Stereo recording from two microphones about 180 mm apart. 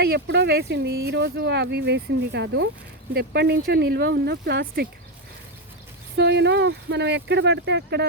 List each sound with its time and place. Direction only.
0.0 s speech: 65° right (ahead or behind)
3.1 s speech: 65° right (ahead or behind)
6.1 s speech: 70° right (ahead or behind)